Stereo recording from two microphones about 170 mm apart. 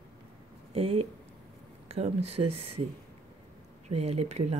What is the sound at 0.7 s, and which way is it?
Speech, 35° right (ahead or behind).